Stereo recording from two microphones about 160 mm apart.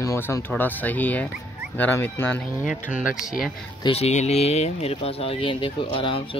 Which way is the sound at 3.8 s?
40° left (ahead or behind).